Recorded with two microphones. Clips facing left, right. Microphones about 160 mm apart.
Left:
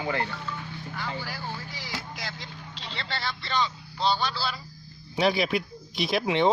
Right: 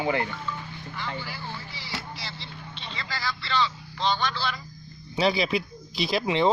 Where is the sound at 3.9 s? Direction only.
10° left (ahead or behind).